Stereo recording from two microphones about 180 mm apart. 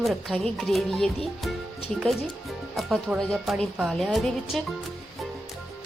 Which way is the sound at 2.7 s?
Centre (ahead or behind).